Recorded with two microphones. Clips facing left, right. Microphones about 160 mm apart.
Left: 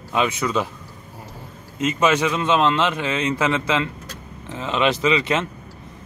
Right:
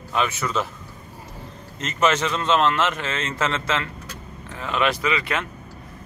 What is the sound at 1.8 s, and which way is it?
A man's voice, 10° left (ahead or behind).